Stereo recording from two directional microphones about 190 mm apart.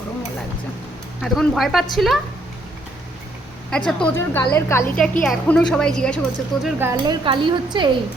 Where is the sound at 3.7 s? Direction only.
5° left (ahead or behind).